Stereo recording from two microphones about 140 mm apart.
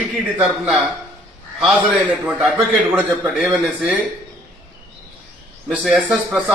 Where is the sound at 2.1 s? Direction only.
10° right (ahead or behind).